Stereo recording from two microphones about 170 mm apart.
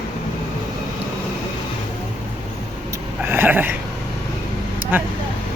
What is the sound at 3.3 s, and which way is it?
Speech, 10° right (ahead or behind).